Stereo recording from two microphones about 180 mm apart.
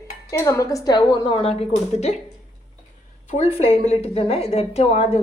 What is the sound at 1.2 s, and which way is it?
Speech, 30° left (ahead or behind).